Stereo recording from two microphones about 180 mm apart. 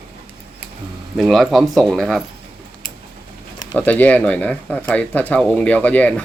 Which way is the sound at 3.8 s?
10° left (ahead or behind).